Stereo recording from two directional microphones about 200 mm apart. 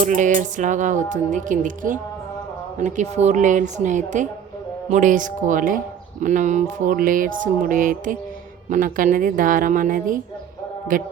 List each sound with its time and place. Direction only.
0.0 s music: 40° right (ahead or behind)
8.7 s speech: 40° right (ahead or behind)